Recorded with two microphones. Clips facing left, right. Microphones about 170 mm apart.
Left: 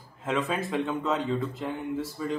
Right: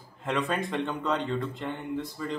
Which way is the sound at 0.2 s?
Centre (ahead or behind).